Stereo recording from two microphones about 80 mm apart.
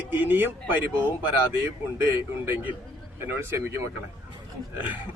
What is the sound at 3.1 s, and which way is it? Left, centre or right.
Speech, right.